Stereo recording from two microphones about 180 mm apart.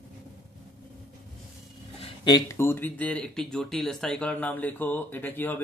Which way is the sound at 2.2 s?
20° left (ahead or behind).